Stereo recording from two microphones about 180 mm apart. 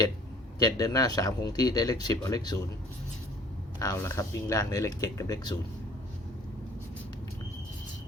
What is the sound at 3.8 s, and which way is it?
Speech, 15° left (ahead or behind).